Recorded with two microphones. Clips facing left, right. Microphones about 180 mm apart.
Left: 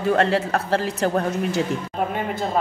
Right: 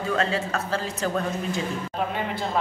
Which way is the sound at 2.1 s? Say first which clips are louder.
Left 4 dB; 45° left (ahead or behind).